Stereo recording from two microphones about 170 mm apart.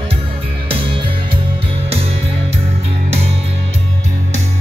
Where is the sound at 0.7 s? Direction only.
30° right (ahead or behind).